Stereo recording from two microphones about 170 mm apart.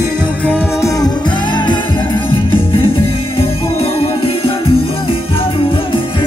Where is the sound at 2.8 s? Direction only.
30° left (ahead or behind).